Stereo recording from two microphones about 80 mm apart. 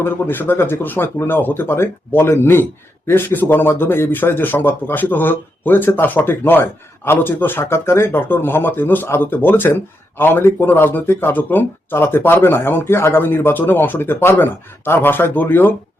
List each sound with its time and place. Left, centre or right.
0.0 s speech: left